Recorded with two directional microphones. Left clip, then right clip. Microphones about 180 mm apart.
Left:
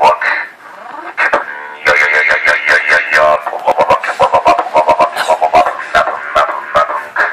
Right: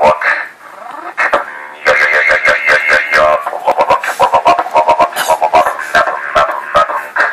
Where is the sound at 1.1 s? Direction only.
Centre (ahead or behind).